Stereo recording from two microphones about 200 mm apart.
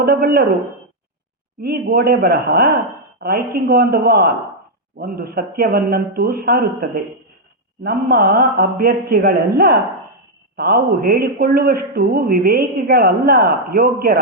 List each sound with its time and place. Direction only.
0.0 s a woman's voice: 50° right (ahead or behind)
1.6 s a woman's voice: 50° right (ahead or behind)